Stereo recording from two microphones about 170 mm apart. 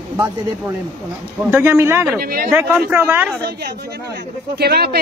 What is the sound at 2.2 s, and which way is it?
Speech, 60° right (ahead or behind).